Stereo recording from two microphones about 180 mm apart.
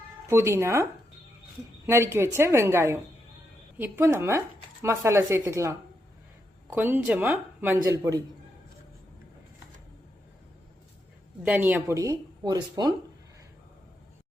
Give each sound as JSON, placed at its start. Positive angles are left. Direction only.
{"t": 0.3, "sound": "speech", "side_deg": -15}
{"t": 1.9, "sound": "speech", "side_deg": -15}
{"t": 11.4, "sound": "speech", "side_deg": -10}